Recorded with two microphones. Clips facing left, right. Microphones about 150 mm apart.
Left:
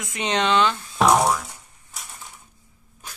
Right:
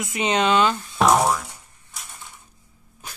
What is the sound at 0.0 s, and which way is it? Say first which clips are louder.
Speech: right 2 dB; 5° right (ahead or behind).